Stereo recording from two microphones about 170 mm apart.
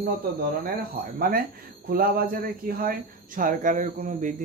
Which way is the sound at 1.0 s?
60° right (ahead or behind).